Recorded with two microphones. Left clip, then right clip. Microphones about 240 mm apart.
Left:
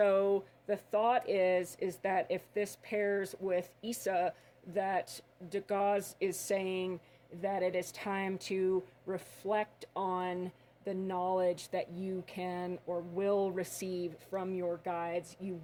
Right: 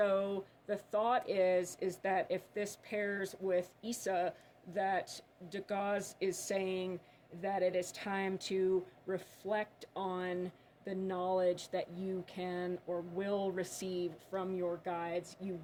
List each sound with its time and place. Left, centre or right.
0.0 s speech: left